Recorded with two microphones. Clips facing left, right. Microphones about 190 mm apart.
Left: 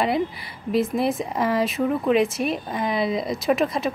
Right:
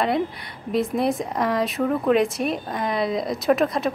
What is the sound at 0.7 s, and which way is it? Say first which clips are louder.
Speech: even; centre (ahead or behind).